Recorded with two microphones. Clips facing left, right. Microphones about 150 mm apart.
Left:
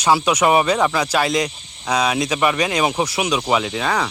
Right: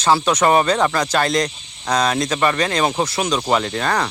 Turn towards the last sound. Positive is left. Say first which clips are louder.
# right 1 dB
turn(degrees=5)  # may be behind; listen again after turning